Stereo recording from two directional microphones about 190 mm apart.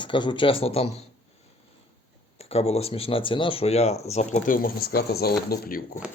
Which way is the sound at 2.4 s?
35° left (ahead or behind).